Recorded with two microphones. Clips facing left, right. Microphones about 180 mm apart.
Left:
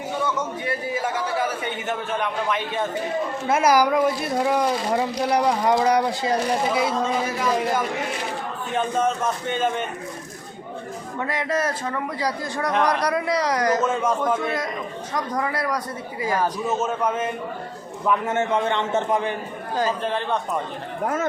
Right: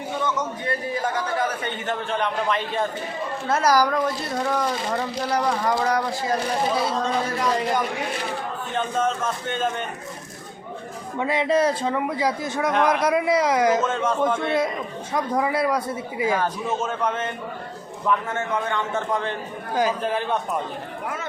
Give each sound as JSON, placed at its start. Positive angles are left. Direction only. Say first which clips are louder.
{"t": 0.2, "sound": "a man's voice", "louder": "even", "side_deg": 10}
{"t": 6.7, "sound": "speech", "louder": "left 1 dB", "side_deg": 5}
{"t": 11.2, "sound": "a man's voice", "louder": "right 4 dB", "side_deg": -25}
{"t": 12.5, "sound": "speech", "louder": "right 1 dB", "side_deg": 0}
{"t": 13.1, "sound": "a man's voice", "louder": "right 3 dB", "side_deg": -20}
{"t": 13.6, "sound": "speech", "louder": "right 2 dB", "side_deg": -5}
{"t": 13.8, "sound": "a man's voice", "louder": "left 1 dB", "side_deg": 10}
{"t": 15.3, "sound": "a man's voice", "louder": "right 4 dB", "side_deg": -15}
{"t": 16.4, "sound": "a man's voice", "louder": "left 2 dB", "side_deg": 5}
{"t": 18.3, "sound": "a man's voice", "louder": "left 4 dB", "side_deg": 25}
{"t": 19.7, "sound": "speech", "louder": "right 1 dB", "side_deg": 0}
{"t": 21.0, "sound": "speech", "louder": "left 9 dB", "side_deg": 45}